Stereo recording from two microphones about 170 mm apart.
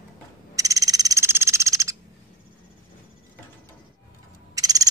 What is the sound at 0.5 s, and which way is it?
Frog, 20° right (ahead or behind).